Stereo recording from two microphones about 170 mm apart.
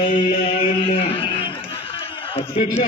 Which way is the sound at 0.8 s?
35° left (ahead or behind).